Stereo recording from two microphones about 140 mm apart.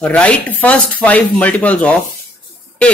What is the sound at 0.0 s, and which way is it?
Speech, 10° left (ahead or behind).